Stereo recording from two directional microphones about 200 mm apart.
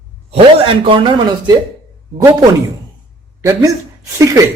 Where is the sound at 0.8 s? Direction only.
25° right (ahead or behind).